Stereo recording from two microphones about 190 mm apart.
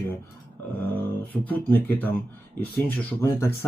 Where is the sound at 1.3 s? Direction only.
10° left (ahead or behind).